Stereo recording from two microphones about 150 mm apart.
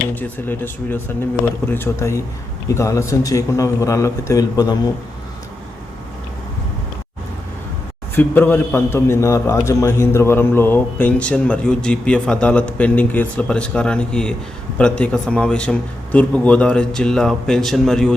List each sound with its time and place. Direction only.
0.1 s a man's voice: 10° left (ahead or behind)
8.1 s a man's voice: 15° left (ahead or behind)